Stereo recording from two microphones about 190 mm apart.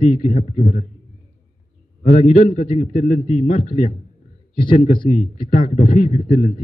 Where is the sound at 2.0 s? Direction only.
40° left (ahead or behind).